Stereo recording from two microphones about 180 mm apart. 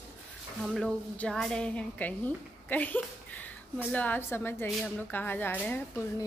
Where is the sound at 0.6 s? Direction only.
Centre (ahead or behind).